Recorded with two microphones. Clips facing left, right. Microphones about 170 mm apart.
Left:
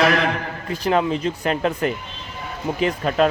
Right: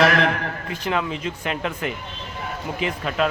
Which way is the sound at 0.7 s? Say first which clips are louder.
Left 6 dB; 35° left (ahead or behind).